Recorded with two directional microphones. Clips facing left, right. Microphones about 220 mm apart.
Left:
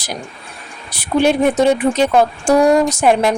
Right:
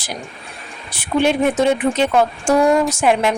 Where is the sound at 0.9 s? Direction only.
40° left (ahead or behind).